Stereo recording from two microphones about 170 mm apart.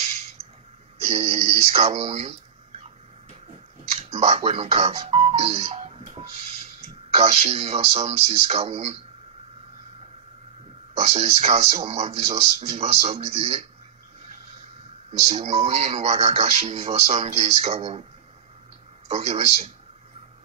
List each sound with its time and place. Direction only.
1.0 s speech: 40° right (ahead or behind)
3.9 s speech: 40° right (ahead or behind)
11.0 s speech: 40° right (ahead or behind)
15.1 s speech: 40° right (ahead or behind)
19.0 s speech: 40° right (ahead or behind)